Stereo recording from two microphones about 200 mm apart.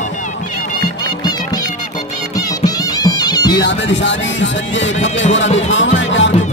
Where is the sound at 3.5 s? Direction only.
65° left (ahead or behind).